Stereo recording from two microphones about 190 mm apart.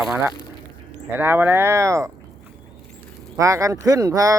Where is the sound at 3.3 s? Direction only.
15° right (ahead or behind).